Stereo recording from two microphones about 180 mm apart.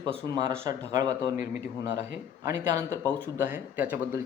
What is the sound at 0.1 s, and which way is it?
Speech, 25° right (ahead or behind).